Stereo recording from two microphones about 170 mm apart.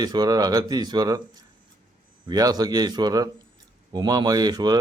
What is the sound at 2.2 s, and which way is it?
Speech, 20° right (ahead or behind).